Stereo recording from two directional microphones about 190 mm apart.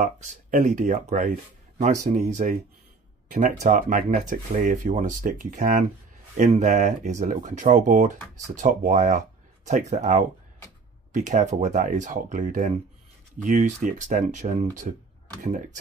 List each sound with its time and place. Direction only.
0.0 s speech: 40° right (ahead or behind)
3.6 s speech: 40° right (ahead or behind)